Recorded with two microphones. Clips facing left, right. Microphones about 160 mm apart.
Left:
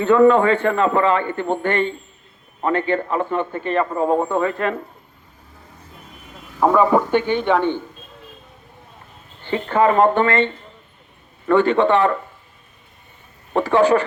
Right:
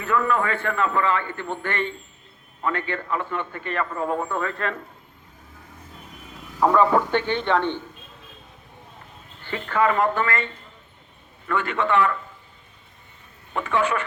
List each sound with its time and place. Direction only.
0.0 s speech: 30° left (ahead or behind)
6.7 s a man's voice: 10° left (ahead or behind)
9.4 s speech: 25° left (ahead or behind)
13.5 s speech: 35° left (ahead or behind)